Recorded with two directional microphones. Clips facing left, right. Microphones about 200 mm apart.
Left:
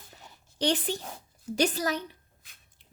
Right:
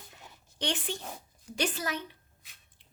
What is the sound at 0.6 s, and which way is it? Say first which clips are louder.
A woman's voice: left 6 dB; 35° left (ahead or behind).